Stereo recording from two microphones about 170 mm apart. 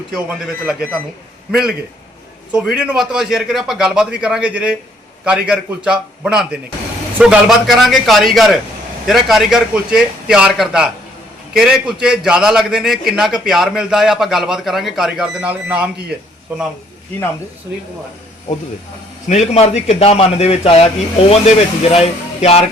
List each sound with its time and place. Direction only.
0.1 s a man's voice: 5° right (ahead or behind)
19.3 s speech: 40° left (ahead or behind)